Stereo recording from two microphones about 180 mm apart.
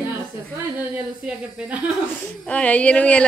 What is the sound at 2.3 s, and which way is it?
Speech, 5° left (ahead or behind).